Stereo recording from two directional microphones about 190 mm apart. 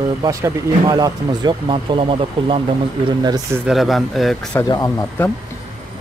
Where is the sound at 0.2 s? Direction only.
20° right (ahead or behind).